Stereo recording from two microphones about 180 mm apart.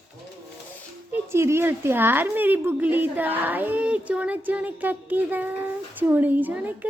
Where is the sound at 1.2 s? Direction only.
15° right (ahead or behind).